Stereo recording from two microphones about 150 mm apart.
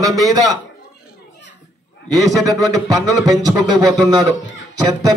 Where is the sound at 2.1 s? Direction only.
25° right (ahead or behind).